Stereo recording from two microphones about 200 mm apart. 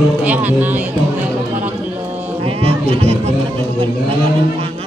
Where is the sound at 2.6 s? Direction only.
30° right (ahead or behind).